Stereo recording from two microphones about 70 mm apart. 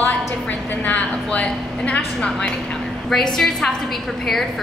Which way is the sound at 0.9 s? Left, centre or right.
Centre.